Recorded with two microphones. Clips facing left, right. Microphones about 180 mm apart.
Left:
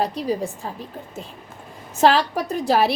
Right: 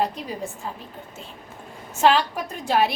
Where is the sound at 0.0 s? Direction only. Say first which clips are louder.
Left 4 dB; 35° left (ahead or behind).